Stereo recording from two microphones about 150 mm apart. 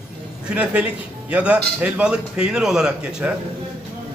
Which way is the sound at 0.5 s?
10° right (ahead or behind).